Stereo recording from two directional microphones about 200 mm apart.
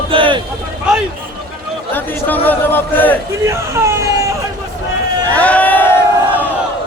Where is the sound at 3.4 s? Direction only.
15° right (ahead or behind).